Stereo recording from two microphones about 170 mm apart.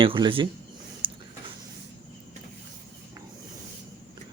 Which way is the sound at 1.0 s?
30° right (ahead or behind).